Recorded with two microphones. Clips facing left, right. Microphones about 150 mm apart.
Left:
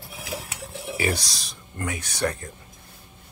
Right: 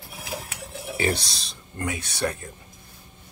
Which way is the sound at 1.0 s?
25° right (ahead or behind).